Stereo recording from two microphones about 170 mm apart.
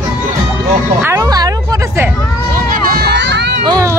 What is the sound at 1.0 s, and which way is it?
Music, 20° right (ahead or behind).